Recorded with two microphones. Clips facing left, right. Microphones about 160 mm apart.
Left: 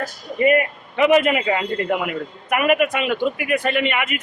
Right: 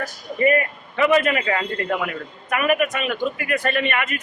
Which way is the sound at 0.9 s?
20° left (ahead or behind).